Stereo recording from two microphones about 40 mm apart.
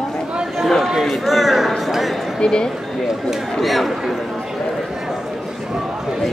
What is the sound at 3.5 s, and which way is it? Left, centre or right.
Speech, centre.